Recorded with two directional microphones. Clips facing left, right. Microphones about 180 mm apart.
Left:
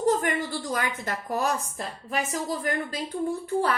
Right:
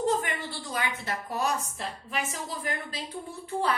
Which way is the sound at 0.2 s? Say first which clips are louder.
Left 6 dB; 50° left (ahead or behind).